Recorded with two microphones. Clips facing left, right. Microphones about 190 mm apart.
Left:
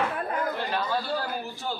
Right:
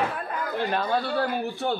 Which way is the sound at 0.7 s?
55° right (ahead or behind).